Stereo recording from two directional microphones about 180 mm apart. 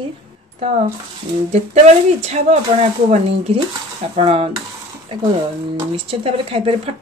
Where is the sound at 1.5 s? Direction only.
35° right (ahead or behind).